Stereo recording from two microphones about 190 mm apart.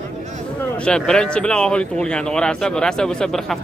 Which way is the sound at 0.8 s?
5° left (ahead or behind).